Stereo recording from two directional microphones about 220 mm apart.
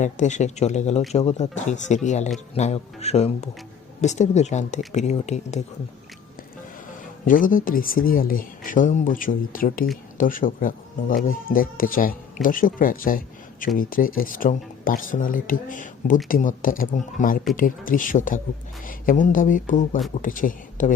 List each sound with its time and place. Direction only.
0.0 s speech: 35° left (ahead or behind)
7.3 s speech: 40° left (ahead or behind)